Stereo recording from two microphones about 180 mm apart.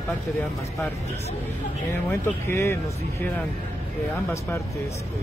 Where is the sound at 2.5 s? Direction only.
10° left (ahead or behind).